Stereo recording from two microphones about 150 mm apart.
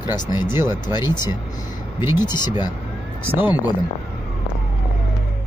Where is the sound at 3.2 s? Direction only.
10° right (ahead or behind).